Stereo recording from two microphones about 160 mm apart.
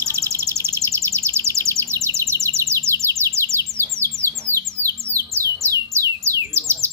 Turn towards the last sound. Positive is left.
turn(degrees=-15)  # may be behind; listen again after turning